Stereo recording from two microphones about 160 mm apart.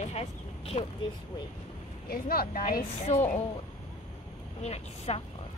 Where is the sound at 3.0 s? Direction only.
50° left (ahead or behind).